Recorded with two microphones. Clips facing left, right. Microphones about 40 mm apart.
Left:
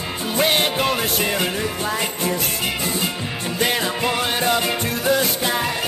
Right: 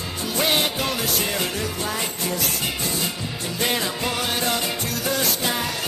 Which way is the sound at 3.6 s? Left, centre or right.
Left.